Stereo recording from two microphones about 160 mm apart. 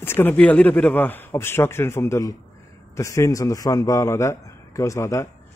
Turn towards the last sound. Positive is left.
turn(degrees=20)  # may be behind; listen again after turning